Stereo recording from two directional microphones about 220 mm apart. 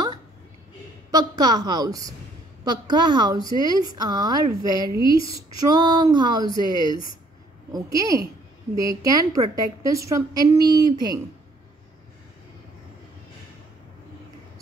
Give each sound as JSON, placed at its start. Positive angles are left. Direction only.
{"t": 1.1, "sound": "a woman's voice", "side_deg": -15}
{"t": 2.6, "sound": "a sound", "side_deg": -20}
{"t": 3.5, "sound": "a woman's voice", "side_deg": -20}
{"t": 5.6, "sound": "a sound", "side_deg": -20}
{"t": 6.5, "sound": "speech", "side_deg": 20}
{"t": 7.7, "sound": "a woman's voice", "side_deg": -15}